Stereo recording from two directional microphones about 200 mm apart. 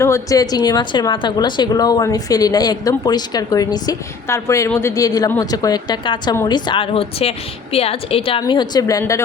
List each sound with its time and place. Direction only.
0.0 s a woman's voice: 15° left (ahead or behind)